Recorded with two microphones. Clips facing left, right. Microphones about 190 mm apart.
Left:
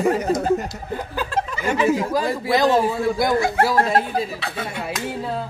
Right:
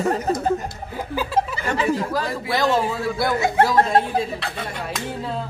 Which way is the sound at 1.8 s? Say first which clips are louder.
Left 4 dB; 15° left (ahead or behind).